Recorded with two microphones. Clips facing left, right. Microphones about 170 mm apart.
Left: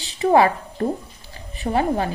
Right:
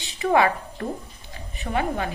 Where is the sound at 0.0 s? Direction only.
35° left (ahead or behind).